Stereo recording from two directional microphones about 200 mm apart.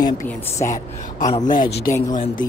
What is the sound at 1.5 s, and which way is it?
Speech, 45° left (ahead or behind).